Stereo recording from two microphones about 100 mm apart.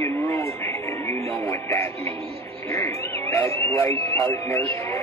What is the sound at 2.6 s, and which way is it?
Cat, 30° left (ahead or behind).